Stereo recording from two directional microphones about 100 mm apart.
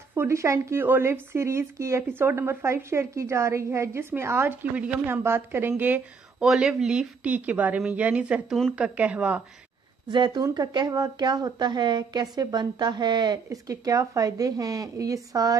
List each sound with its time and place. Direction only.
0.1 s a woman's voice: 25° right (ahead or behind)
6.4 s a woman's voice: 5° right (ahead or behind)
10.0 s a woman's voice: 50° right (ahead or behind)